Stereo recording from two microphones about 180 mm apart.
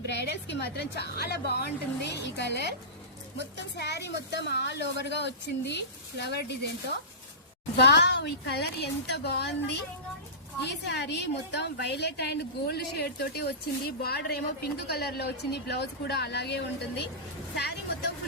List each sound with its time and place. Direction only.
0.0 s a woman's voice: 70° left (ahead or behind)
3.8 s a woman's voice: 70° left (ahead or behind)
7.8 s a woman's voice: 70° left (ahead or behind)